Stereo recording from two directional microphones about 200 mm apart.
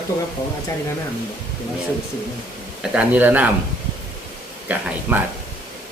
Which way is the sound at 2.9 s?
10° right (ahead or behind).